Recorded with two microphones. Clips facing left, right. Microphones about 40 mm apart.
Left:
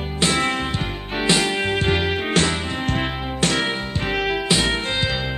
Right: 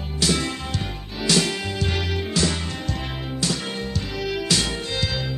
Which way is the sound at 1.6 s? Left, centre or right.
Left.